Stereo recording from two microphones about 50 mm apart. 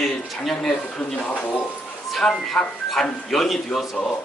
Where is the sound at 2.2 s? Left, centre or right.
Centre.